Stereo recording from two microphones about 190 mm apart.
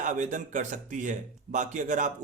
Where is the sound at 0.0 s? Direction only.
40° right (ahead or behind).